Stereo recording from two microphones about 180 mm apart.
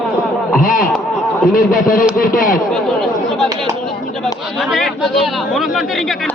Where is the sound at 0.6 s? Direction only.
50° left (ahead or behind).